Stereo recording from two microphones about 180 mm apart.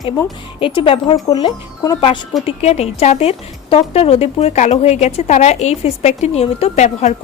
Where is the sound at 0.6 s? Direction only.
30° left (ahead or behind).